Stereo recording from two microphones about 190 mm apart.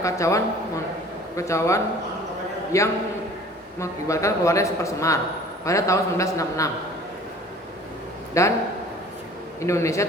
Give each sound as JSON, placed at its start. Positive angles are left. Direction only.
{"t": 0.0, "sound": "a man's voice", "side_deg": 15}
{"t": 8.3, "sound": "a man's voice", "side_deg": 15}
{"t": 9.6, "sound": "a man's voice", "side_deg": 15}